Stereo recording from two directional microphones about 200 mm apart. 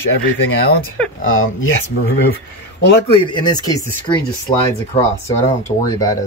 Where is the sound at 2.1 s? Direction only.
45° left (ahead or behind).